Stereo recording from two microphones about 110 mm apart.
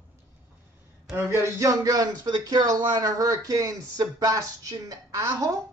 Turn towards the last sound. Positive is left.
turn(degrees=-30)  # may be behind; listen again after turning